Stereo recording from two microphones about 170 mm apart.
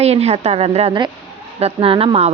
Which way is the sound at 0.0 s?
40° right (ahead or behind).